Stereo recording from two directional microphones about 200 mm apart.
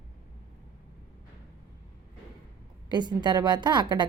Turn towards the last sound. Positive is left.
turn(degrees=-20)  # may be behind; listen again after turning